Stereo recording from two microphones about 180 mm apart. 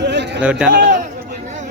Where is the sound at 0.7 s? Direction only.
50° right (ahead or behind).